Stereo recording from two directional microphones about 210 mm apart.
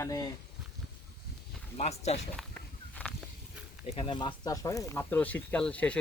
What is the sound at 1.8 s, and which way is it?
Speech, 30° left (ahead or behind).